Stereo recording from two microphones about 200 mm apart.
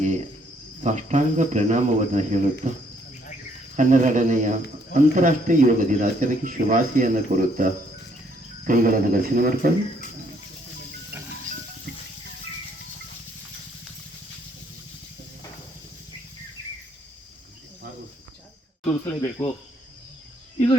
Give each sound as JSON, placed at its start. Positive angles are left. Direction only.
{"t": 0.8, "sound": "speech", "side_deg": -35}
{"t": 3.8, "sound": "speech", "side_deg": -40}
{"t": 18.9, "sound": "speech", "side_deg": 15}